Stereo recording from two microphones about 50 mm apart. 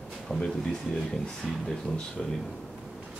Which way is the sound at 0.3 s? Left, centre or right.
Centre.